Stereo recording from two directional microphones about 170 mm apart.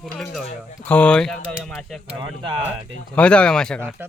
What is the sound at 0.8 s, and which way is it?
Speech, 10° left (ahead or behind).